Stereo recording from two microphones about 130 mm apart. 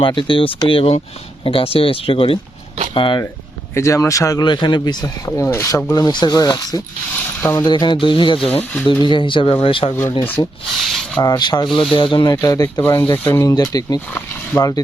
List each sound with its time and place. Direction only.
0.0 s speech: 40° left (ahead or behind)
3.8 s rub: 20° left (ahead or behind)
4.4 s speech: 35° left (ahead or behind)
5.5 s rub: 25° left (ahead or behind)
7.4 s rub: 20° left (ahead or behind)
7.7 s speech: 35° left (ahead or behind)
10.4 s rub: 30° left (ahead or behind)
10.8 s a sound: centre (ahead or behind)
11.2 s speech: 30° left (ahead or behind)
11.9 s rub: 40° left (ahead or behind)
14.1 s rowboat: 25° left (ahead or behind)